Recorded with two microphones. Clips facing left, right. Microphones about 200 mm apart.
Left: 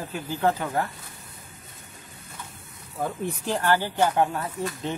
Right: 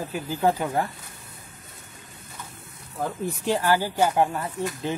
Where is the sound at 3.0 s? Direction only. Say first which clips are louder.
Right 1 dB; centre (ahead or behind).